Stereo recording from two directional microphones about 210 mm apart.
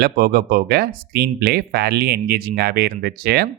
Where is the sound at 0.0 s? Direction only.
45° right (ahead or behind).